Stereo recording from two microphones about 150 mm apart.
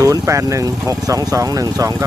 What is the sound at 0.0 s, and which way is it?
Speech, 20° right (ahead or behind).